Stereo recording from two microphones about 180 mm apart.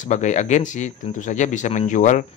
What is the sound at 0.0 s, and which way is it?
Speech, 40° left (ahead or behind).